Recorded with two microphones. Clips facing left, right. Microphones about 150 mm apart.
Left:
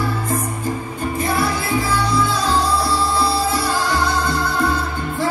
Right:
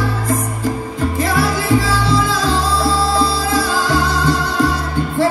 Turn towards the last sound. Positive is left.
turn(degrees=-90)